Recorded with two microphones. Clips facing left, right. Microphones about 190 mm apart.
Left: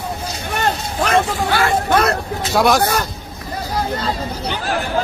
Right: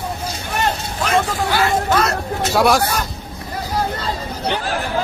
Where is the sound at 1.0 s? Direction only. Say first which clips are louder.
Left 2 dB; 60° left (ahead or behind).